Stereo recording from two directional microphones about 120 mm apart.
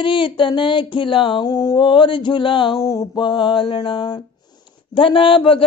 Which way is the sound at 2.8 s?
25° left (ahead or behind).